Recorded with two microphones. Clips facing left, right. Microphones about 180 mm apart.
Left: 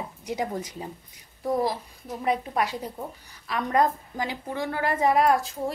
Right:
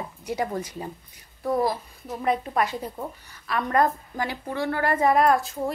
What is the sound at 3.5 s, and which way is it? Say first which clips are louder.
A woman's voice: right 1 dB; 15° left (ahead or behind).